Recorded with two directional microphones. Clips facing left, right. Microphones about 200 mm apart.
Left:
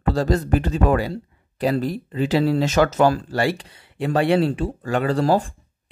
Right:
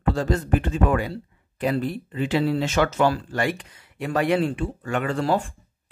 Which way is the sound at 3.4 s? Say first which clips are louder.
Left 3 dB; 30° left (ahead or behind).